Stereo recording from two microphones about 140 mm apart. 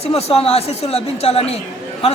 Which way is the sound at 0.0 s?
45° left (ahead or behind).